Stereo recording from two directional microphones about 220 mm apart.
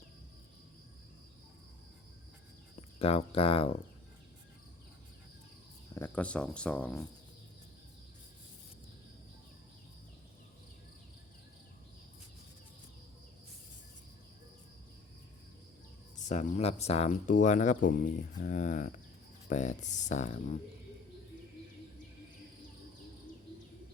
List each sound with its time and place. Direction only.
3.0 s speech: 25° left (ahead or behind)
5.9 s speech: 10° left (ahead or behind)
16.2 s speech: 35° left (ahead or behind)